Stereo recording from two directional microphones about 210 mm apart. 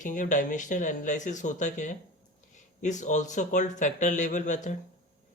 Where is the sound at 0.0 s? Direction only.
35° left (ahead or behind).